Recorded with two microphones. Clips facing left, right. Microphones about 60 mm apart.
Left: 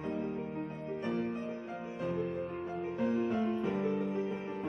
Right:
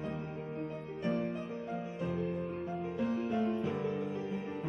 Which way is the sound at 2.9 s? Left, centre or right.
Left.